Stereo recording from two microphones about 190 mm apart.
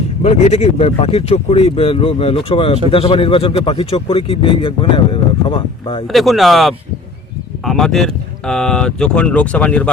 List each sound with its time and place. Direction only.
0.2 s speech: 35° left (ahead or behind)
6.1 s speech: centre (ahead or behind)